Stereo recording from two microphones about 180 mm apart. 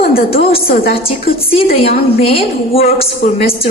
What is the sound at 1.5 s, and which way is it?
A woman's voice, 35° left (ahead or behind).